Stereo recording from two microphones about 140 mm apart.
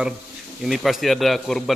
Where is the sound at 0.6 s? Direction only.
Centre (ahead or behind).